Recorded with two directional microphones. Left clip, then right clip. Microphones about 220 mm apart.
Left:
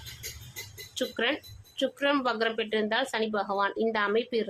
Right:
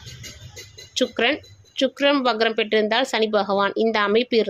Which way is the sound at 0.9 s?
25° right (ahead or behind).